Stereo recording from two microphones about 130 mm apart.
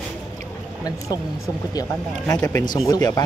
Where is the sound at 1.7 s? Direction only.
30° left (ahead or behind).